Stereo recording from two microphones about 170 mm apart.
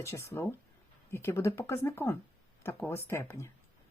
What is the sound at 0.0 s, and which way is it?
Speech, 15° left (ahead or behind).